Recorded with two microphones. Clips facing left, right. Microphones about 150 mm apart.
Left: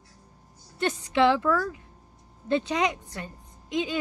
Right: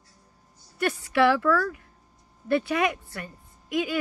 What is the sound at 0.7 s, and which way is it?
A woman's voice, 20° left (ahead or behind).